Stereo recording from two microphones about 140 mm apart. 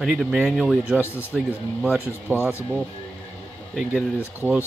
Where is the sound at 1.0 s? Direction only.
15° left (ahead or behind).